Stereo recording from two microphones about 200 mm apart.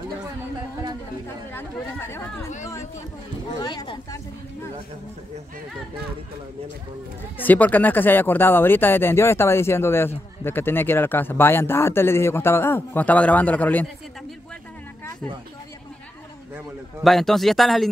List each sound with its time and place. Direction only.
1.5 s speech: 10° left (ahead or behind)
3.6 s speech: 20° left (ahead or behind)
7.3 s speech: 10° left (ahead or behind)
17.0 s speech: centre (ahead or behind)